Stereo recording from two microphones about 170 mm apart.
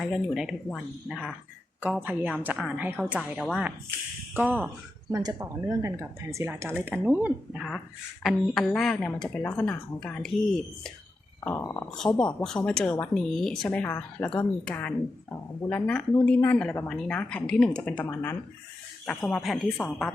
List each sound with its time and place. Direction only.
0.0 s a woman's voice: centre (ahead or behind)
3.2 s a woman's voice: centre (ahead or behind)
5.1 s speech: 20° right (ahead or behind); by 10.3 s 5° left (ahead or behind)
11.4 s a woman's voice: 15° left (ahead or behind)
11.9 s a woman's voice: 5° left (ahead or behind)